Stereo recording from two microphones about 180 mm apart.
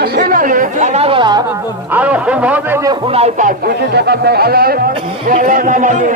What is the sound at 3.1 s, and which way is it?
Speech, 35° right (ahead or behind).